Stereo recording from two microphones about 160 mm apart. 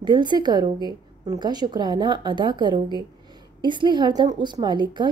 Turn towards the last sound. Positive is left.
turn(degrees=-30)  # may be behind; listen again after turning